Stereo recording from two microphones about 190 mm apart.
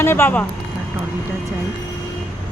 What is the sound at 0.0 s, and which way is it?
Speech, 10° left (ahead or behind).